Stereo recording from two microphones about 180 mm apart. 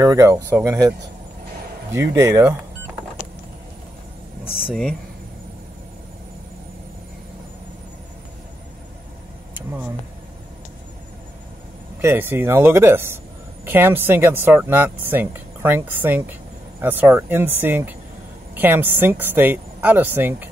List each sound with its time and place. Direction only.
0.0 s speech: 20° right (ahead or behind)
12.0 s speech: 15° right (ahead or behind)